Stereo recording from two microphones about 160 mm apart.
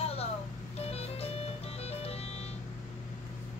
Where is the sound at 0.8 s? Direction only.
40° left (ahead or behind).